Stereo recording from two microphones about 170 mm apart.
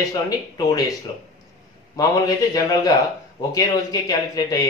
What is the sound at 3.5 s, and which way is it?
Speech, 20° left (ahead or behind).